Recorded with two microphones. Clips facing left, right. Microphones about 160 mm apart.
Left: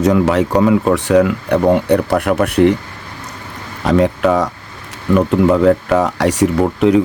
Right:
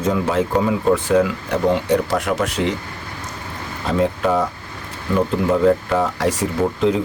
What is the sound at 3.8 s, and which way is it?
Speech, 75° left (ahead or behind).